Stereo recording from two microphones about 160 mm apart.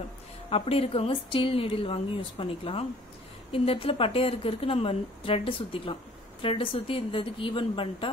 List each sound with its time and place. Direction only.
0.5 s a woman's voice: 35° left (ahead or behind)